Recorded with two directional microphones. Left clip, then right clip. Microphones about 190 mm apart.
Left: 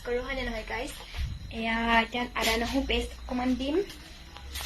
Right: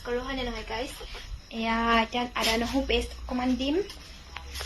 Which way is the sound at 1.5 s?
20° right (ahead or behind).